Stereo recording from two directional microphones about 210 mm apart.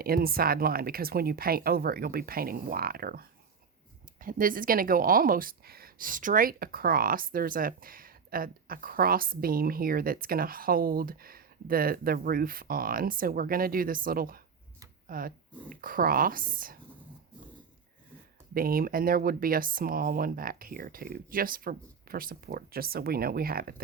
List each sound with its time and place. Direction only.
0.0 s speech: 45° right (ahead or behind)
18.5 s speech: 45° right (ahead or behind)